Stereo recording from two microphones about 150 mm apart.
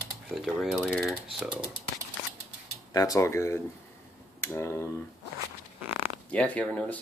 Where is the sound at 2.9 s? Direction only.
25° left (ahead or behind).